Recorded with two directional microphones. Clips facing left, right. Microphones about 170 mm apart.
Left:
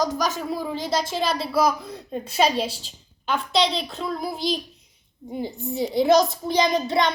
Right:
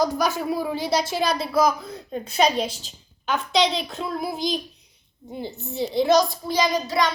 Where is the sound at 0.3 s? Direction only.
15° right (ahead or behind).